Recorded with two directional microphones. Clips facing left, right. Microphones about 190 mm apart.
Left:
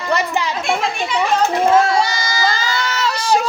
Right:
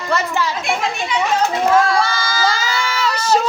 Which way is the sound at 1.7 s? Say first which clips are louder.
Left 1 dB; 25° left (ahead or behind).